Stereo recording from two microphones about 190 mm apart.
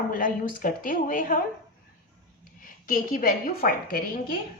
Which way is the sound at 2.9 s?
45° left (ahead or behind).